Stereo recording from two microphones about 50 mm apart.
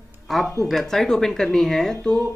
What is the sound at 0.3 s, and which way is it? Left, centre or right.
Speech, centre.